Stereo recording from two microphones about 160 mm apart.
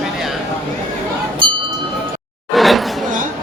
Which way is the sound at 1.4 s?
30° right (ahead or behind).